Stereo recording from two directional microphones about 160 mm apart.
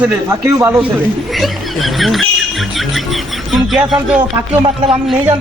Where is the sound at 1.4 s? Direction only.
Centre (ahead or behind).